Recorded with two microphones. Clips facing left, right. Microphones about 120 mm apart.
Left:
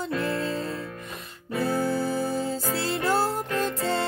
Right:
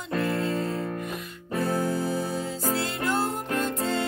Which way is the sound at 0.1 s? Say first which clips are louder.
Right 3 dB; 45° right (ahead or behind).